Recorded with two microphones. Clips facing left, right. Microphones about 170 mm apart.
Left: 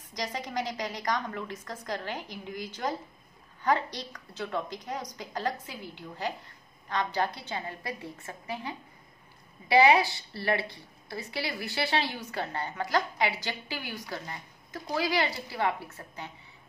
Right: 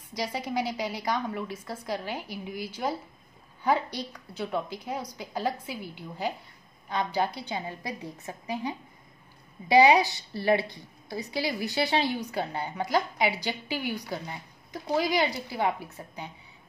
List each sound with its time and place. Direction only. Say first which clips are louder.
0.1 s a woman's voice: right 3 dB; 10° right (ahead or behind)